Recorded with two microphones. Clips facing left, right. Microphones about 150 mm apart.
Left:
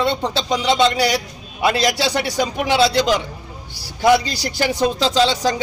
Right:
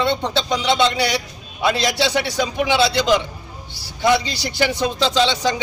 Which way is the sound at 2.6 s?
40° left (ahead or behind).